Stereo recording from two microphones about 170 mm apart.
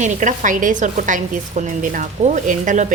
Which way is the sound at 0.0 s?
45° right (ahead or behind).